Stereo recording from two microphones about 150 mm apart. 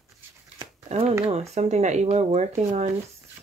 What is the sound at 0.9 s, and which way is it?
Speech, 40° right (ahead or behind).